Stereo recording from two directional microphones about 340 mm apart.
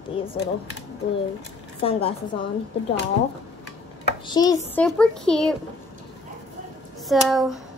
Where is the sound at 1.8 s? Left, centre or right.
Centre.